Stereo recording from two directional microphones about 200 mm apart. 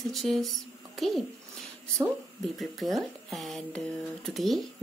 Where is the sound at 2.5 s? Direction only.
Centre (ahead or behind).